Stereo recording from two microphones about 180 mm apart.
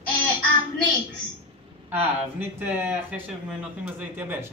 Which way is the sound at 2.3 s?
10° right (ahead or behind).